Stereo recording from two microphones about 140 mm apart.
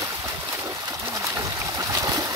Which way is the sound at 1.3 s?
25° right (ahead or behind).